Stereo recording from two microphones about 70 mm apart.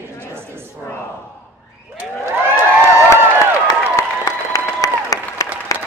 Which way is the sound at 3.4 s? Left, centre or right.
Left.